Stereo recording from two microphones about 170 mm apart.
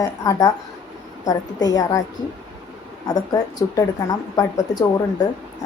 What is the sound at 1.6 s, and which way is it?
Speech, 20° left (ahead or behind).